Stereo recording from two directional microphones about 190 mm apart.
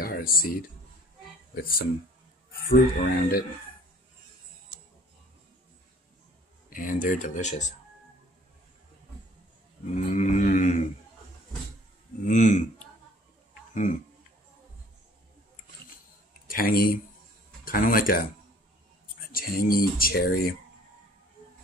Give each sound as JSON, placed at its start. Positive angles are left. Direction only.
{"t": 0.0, "sound": "speech", "side_deg": 50}
{"t": 3.0, "sound": "speech", "side_deg": 50}
{"t": 6.7, "sound": "speech", "side_deg": 45}
{"t": 9.9, "sound": "a sound", "side_deg": 40}
{"t": 12.3, "sound": "a sound", "side_deg": 40}
{"t": 16.4, "sound": "speech", "side_deg": 50}
{"t": 19.3, "sound": "speech", "side_deg": 50}